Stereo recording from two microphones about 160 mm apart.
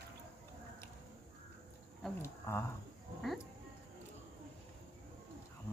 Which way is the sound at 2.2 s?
15° left (ahead or behind).